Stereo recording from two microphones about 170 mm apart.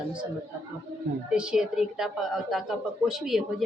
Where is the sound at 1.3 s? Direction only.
5° right (ahead or behind).